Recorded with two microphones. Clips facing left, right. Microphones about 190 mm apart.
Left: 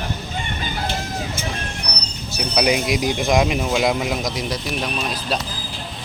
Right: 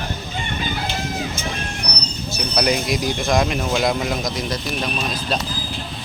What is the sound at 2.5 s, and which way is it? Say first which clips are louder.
Speech: left 1 dB; 10° left (ahead or behind).